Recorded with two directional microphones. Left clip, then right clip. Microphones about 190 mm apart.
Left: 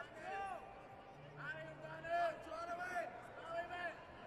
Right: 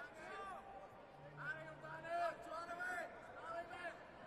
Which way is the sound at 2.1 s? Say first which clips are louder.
Left 3 dB; 15° right (ahead or behind).